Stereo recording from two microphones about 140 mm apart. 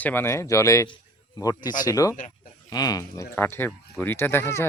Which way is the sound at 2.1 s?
60° left (ahead or behind).